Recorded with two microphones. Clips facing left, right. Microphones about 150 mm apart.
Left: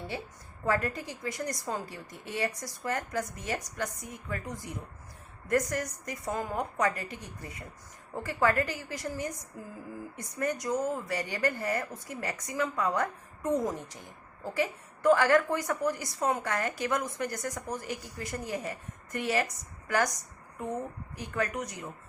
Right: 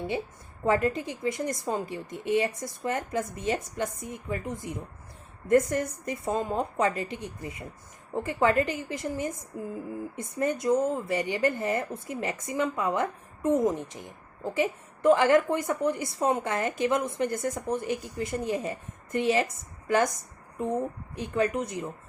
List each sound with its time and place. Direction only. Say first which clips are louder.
0.6 s a woman's voice: right 5 dB; 20° right (ahead or behind)
21.2 s a woman's voice: right 6 dB; 20° right (ahead or behind)